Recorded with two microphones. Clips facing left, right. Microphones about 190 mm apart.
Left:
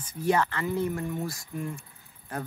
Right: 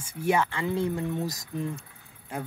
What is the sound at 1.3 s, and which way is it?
Speech, 40° right (ahead or behind).